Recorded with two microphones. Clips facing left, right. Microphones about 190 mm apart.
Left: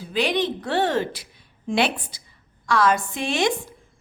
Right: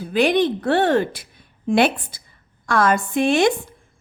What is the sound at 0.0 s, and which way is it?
A woman's voice, 50° right (ahead or behind).